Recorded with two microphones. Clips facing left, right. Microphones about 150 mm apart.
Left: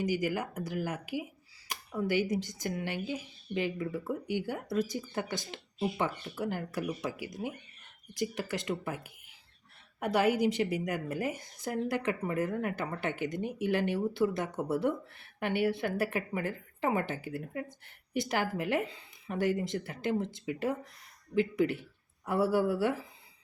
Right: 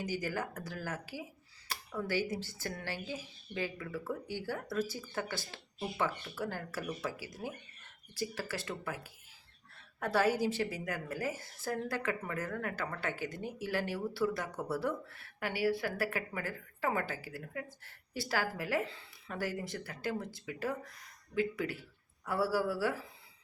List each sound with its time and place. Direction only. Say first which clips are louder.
0.0 s a woman's voice: left 5 dB; 15° left (ahead or behind)